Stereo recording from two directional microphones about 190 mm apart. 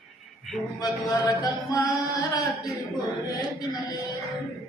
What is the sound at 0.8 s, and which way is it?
Music, 20° left (ahead or behind).